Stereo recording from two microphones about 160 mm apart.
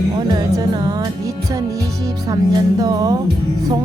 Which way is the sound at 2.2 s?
25° right (ahead or behind).